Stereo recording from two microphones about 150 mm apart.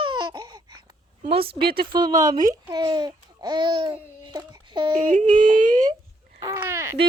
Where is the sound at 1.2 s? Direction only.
40° right (ahead or behind).